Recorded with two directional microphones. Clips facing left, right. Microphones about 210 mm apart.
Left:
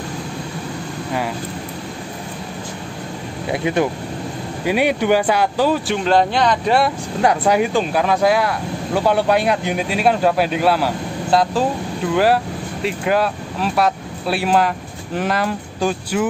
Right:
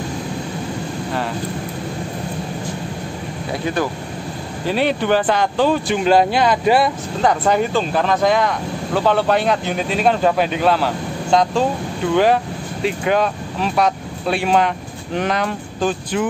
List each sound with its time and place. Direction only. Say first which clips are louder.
3.6 s speech: left 3 dB; 20° left (ahead or behind)
6.0 s speech: right 1 dB; 5° right (ahead or behind)
7.2 s speech: left 1 dB; 10° left (ahead or behind)